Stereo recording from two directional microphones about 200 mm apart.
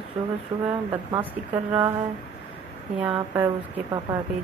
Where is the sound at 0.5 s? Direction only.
30° right (ahead or behind).